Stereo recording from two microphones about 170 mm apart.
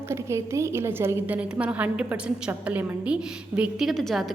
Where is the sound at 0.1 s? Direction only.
15° right (ahead or behind).